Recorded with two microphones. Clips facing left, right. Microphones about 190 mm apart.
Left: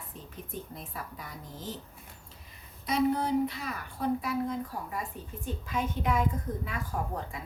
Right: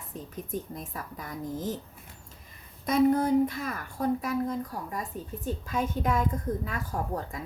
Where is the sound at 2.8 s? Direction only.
50° right (ahead or behind).